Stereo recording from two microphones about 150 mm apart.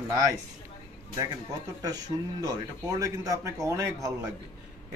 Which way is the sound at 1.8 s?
25° right (ahead or behind).